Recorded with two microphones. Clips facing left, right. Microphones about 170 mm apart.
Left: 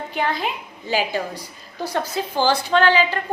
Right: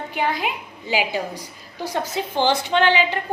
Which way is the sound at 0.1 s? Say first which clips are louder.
Even; 15° right (ahead or behind).